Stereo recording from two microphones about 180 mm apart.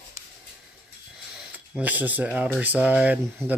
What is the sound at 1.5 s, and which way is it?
Speech, 10° right (ahead or behind).